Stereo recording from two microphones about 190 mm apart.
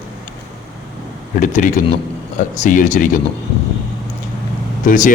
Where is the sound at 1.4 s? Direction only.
40° left (ahead or behind).